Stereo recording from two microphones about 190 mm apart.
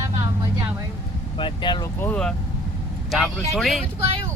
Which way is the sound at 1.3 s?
25° left (ahead or behind).